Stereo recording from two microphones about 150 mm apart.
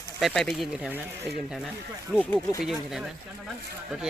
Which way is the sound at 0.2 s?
Centre (ahead or behind).